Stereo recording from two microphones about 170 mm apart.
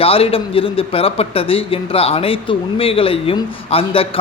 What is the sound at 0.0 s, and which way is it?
A man's voice, 35° left (ahead or behind).